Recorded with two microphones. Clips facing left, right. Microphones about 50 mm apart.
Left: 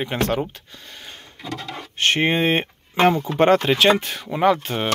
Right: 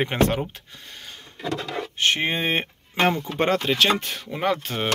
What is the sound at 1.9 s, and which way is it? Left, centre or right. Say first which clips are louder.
Speech: left 5 dB; left.